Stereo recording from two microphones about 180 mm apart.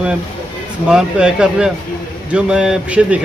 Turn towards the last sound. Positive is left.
turn(degrees=-5)  # may be behind; listen again after turning